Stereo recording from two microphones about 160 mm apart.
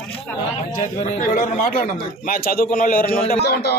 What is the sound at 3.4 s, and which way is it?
Speech, 90° left.